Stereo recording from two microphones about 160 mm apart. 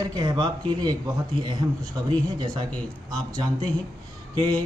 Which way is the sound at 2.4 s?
25° right (ahead or behind).